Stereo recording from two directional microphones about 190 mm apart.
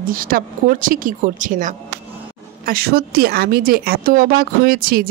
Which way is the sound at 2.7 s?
55° right (ahead or behind).